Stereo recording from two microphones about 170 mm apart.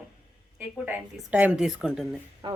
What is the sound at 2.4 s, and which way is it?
Speech, 30° right (ahead or behind).